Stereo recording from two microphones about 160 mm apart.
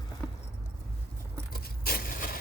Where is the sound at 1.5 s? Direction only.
70° left (ahead or behind).